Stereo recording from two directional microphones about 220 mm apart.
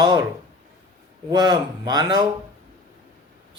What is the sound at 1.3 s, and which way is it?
Speech, 20° right (ahead or behind).